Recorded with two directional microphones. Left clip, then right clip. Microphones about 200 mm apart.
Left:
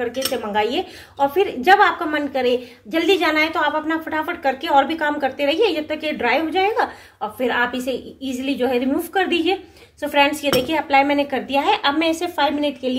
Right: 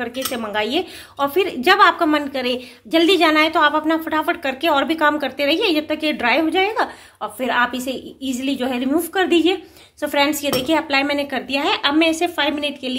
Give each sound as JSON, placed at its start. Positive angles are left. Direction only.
{"t": 0.0, "sound": "speech", "side_deg": -50}